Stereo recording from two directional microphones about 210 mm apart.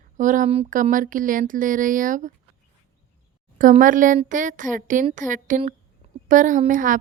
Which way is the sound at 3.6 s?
40° right (ahead or behind).